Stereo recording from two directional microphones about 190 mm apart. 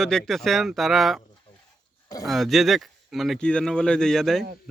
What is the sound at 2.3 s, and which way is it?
Speech, centre (ahead or behind).